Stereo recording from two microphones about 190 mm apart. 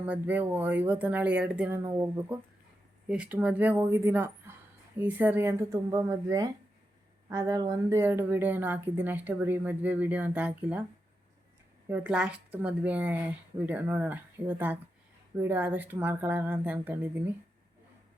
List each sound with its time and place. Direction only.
0.0 s speech: 10° right (ahead or behind)
11.9 s speech: 10° right (ahead or behind)